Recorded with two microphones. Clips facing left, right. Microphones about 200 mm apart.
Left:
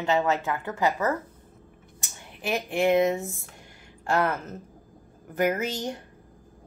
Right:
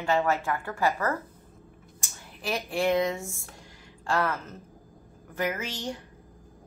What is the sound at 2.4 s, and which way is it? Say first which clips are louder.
A woman's voice: left 3 dB; 25° left (ahead or behind).